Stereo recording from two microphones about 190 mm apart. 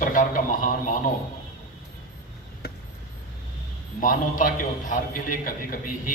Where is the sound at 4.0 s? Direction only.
45° left (ahead or behind).